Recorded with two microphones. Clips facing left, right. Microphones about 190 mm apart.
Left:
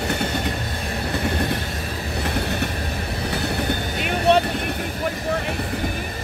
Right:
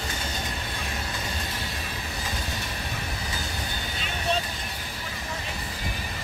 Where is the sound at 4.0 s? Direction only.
65° left (ahead or behind).